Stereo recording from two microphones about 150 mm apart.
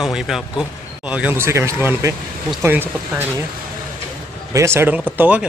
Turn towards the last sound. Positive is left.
turn(degrees=-10)  # may be behind; listen again after turning